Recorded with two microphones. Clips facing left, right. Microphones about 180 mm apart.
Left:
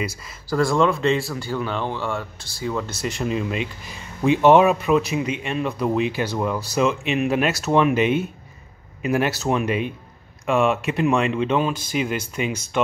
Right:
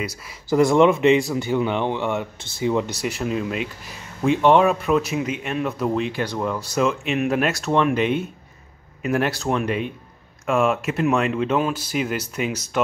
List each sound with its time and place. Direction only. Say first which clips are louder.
0.0 s speech: left 1 dB; 5° right (ahead or behind)
0.5 s speech: right 4 dB; 20° right (ahead or behind); by 12.5 s 5° right (ahead or behind)